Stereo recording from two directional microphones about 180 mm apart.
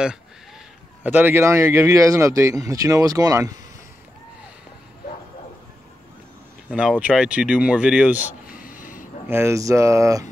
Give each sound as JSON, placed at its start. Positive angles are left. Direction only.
{"t": 1.0, "sound": "speech", "side_deg": -10}
{"t": 6.7, "sound": "speech", "side_deg": -5}
{"t": 8.2, "sound": "a sound", "side_deg": 50}
{"t": 9.3, "sound": "speech", "side_deg": -15}